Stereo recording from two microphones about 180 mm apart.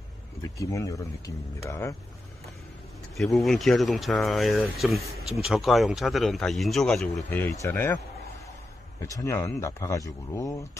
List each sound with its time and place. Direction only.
0.4 s speech: 20° left (ahead or behind)
3.3 s speech: centre (ahead or behind)
9.0 s speech: 20° left (ahead or behind)